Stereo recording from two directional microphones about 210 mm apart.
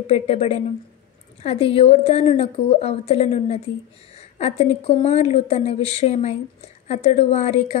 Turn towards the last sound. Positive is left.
turn(degrees=30)  # may be behind; listen again after turning